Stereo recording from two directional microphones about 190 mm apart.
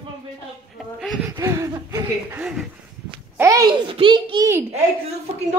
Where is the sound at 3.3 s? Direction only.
15° right (ahead or behind).